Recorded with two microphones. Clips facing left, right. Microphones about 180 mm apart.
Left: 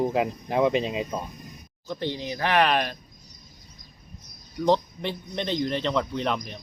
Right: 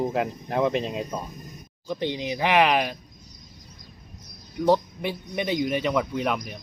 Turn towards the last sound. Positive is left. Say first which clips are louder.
# right 1 dB
turn(degrees=-5)  # may be behind; listen again after turning